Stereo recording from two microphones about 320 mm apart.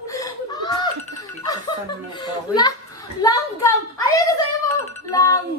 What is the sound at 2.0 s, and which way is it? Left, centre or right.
Children playing, centre.